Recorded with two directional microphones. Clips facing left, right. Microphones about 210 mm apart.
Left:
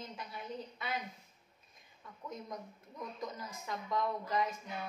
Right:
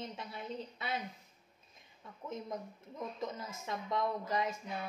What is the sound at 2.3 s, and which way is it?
A woman's voice, 25° right (ahead or behind).